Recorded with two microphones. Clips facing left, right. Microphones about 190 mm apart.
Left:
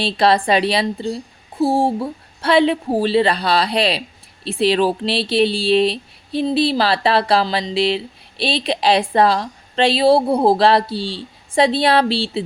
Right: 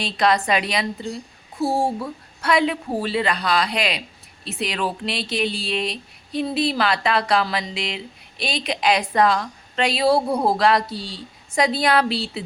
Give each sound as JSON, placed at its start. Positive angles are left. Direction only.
{"t": 0.0, "sound": "speech", "side_deg": 30}